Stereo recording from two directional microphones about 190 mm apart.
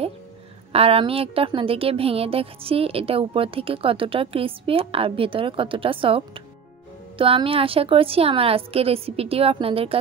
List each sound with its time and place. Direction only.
0.7 s a woman's voice: 30° right (ahead or behind)